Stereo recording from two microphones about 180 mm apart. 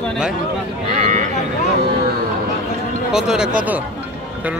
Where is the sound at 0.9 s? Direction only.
40° right (ahead or behind).